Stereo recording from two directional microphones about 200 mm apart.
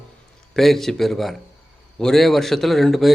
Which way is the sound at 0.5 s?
Centre (ahead or behind).